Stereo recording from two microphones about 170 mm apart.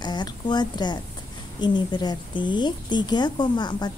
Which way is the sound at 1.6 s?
25° left (ahead or behind).